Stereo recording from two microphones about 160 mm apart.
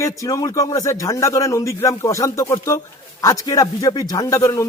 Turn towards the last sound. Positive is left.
turn(degrees=20)  # may be behind; listen again after turning